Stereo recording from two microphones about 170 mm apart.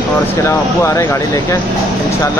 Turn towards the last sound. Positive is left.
turn(degrees=20)  # may be behind; listen again after turning